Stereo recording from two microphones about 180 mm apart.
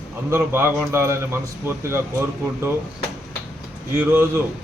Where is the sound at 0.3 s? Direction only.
15° right (ahead or behind).